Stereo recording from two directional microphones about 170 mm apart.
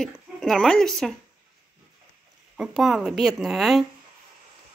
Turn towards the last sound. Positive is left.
turn(degrees=0)  # may be behind; listen again after turning